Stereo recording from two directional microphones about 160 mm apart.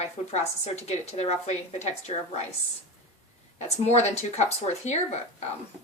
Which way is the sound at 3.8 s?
45° left (ahead or behind).